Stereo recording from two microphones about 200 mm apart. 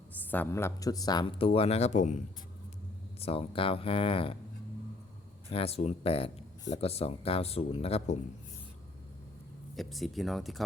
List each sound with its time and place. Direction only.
0.3 s speech: 10° left (ahead or behind); by 4.4 s 25° left (ahead or behind)
5.5 s speech: 30° left (ahead or behind)
9.7 s speech: centre (ahead or behind)